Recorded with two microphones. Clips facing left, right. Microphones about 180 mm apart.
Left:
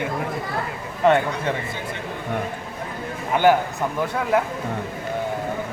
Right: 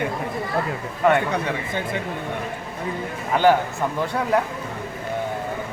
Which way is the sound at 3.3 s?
15° left (ahead or behind).